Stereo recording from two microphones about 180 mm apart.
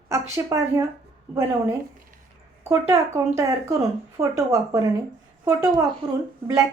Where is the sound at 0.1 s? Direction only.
15° right (ahead or behind).